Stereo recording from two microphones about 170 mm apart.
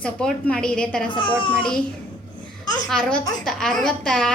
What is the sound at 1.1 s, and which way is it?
Speech, 30° left (ahead or behind).